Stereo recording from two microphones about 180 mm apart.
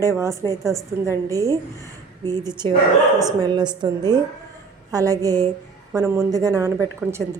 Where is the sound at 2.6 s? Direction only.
25° right (ahead or behind).